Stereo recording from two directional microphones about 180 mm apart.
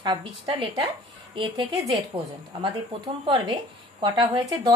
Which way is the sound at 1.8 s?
Centre (ahead or behind).